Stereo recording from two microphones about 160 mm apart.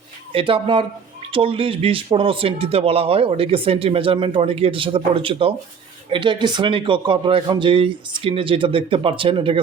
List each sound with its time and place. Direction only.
0.3 s speech: 35° right (ahead or behind)